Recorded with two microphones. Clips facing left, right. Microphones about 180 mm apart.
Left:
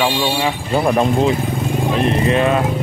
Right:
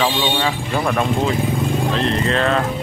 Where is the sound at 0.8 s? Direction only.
20° left (ahead or behind).